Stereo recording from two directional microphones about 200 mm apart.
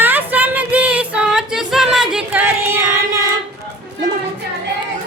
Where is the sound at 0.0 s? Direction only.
10° right (ahead or behind).